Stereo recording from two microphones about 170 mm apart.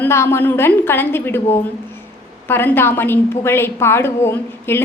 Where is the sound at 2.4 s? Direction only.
10° left (ahead or behind).